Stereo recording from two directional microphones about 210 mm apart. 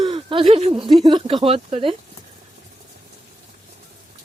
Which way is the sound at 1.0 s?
25° right (ahead or behind).